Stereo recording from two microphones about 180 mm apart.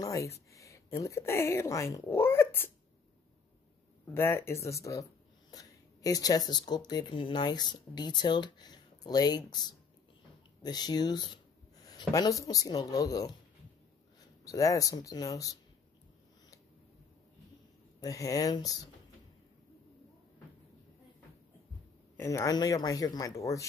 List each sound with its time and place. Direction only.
0.0 s speech: 15° left (ahead or behind)
4.0 s speech: 15° left (ahead or behind)
14.4 s speech: 20° left (ahead or behind)
18.0 s speech: 20° left (ahead or behind)
22.1 s speech: 15° left (ahead or behind)